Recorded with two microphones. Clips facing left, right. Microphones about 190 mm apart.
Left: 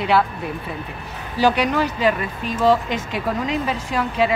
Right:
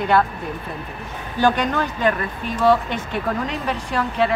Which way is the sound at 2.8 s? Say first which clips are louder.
Even; 90° left.